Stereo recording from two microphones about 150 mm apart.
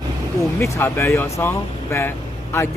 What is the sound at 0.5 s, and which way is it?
Speech, 20° left (ahead or behind).